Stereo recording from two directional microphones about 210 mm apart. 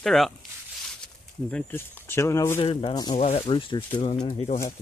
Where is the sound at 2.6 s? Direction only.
25° left (ahead or behind).